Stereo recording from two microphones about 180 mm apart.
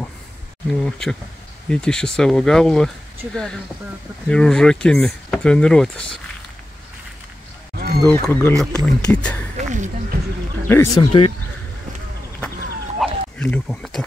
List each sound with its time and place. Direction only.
0.7 s speech: 5° left (ahead or behind)
4.3 s speech: 5° left (ahead or behind)
7.7 s a sound: 60° right (ahead or behind)
8.1 s speech: 15° left (ahead or behind)
9.6 s music: 45° right (ahead or behind)
10.1 s music: 60° right (ahead or behind)
11.0 s speech: 30° left (ahead or behind)
13.0 s a sound: 5° left (ahead or behind)